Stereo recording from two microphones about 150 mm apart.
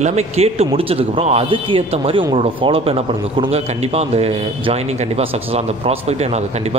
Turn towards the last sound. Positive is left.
turn(degrees=-45)  # may be behind; listen again after turning